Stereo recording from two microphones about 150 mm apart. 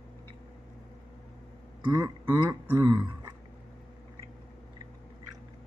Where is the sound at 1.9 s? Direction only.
25° right (ahead or behind).